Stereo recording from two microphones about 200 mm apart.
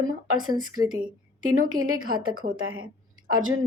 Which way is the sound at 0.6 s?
90° right.